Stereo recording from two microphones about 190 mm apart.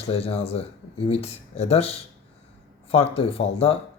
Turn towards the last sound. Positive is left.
turn(degrees=30)  # may be behind; listen again after turning